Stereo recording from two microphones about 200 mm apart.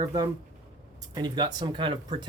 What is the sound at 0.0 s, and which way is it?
Speech, 20° right (ahead or behind).